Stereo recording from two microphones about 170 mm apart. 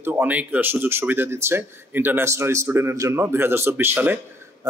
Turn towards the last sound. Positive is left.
turn(degrees=-20)  # may be behind; listen again after turning